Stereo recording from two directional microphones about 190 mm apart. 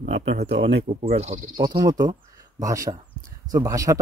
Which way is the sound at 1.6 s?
20° right (ahead or behind).